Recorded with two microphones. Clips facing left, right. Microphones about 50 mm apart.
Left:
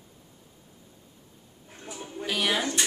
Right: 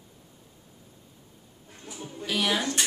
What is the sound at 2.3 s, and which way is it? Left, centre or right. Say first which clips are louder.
Speech: even; centre.